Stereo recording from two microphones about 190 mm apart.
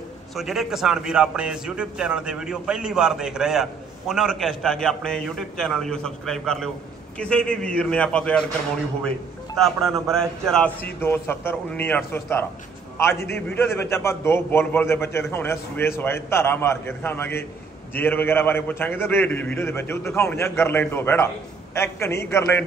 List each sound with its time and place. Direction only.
0.4 s a man's voice: centre (ahead or behind)
9.7 s a man's voice: centre (ahead or behind)